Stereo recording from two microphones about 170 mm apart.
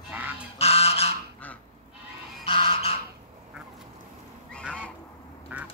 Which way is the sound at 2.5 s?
30° left (ahead or behind).